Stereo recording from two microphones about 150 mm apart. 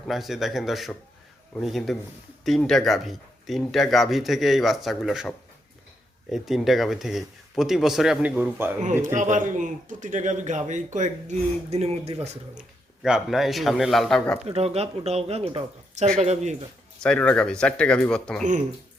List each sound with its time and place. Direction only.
0.1 s speech: centre (ahead or behind)
6.3 s speech: centre (ahead or behind)
8.8 s speech: 55° right (ahead or behind)
12.5 s speech: 5° right (ahead or behind)
14.4 s speech: 40° right (ahead or behind)
17.0 s speech: 5° left (ahead or behind)